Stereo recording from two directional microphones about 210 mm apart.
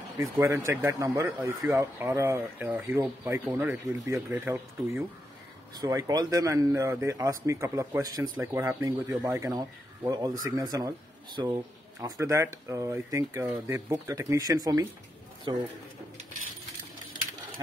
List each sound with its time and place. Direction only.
0.4 s speech: 15° right (ahead or behind)
12.0 s speech: 15° right (ahead or behind)